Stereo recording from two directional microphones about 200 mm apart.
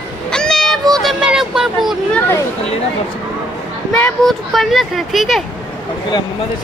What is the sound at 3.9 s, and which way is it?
Speech, 5° left (ahead or behind).